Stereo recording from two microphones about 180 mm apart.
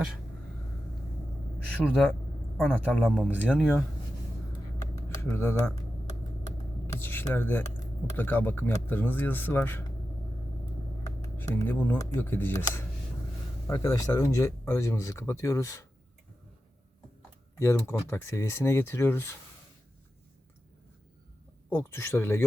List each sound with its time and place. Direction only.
1.8 s speech: centre (ahead or behind)
4.9 s speech: 15° left (ahead or behind)
6.8 s a sound: 10° left (ahead or behind)
8.0 s speech: 10° left (ahead or behind)
11.0 s speech: 15° left (ahead or behind)
17.6 s speech: 15° left (ahead or behind)
21.7 s speech: 15° left (ahead or behind)